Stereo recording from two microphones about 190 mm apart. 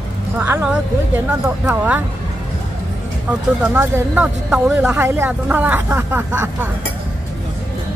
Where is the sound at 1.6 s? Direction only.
5° right (ahead or behind).